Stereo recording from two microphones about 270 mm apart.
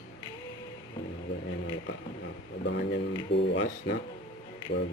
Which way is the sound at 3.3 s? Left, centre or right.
Left.